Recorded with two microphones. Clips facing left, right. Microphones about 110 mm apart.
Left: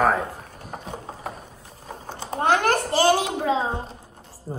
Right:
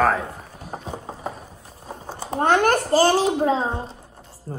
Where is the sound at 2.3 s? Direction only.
35° right (ahead or behind).